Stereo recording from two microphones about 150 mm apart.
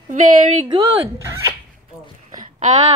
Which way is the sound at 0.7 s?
20° right (ahead or behind).